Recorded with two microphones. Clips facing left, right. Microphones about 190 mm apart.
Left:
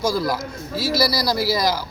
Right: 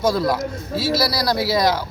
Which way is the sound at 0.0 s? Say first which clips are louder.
Right 3 dB; centre (ahead or behind).